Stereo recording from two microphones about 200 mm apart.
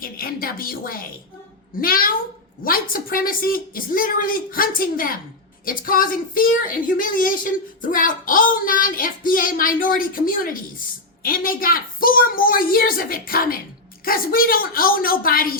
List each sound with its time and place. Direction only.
0.0 s a woman's voice: 45° left (ahead or behind)